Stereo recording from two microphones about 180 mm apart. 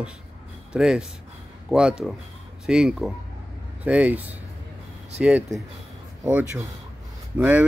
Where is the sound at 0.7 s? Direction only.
5° right (ahead or behind).